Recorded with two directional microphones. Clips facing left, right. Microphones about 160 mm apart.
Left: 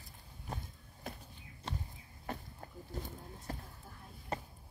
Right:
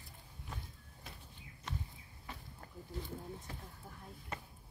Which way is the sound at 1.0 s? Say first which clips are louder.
Left 9 dB; 50° left (ahead or behind).